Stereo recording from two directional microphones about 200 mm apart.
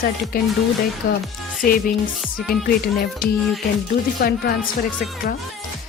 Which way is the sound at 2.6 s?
45° left (ahead or behind).